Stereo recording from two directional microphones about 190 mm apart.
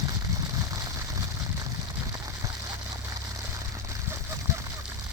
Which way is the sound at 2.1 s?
15° right (ahead or behind).